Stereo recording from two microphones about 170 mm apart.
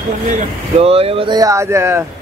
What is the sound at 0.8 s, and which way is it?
Speech, 35° right (ahead or behind).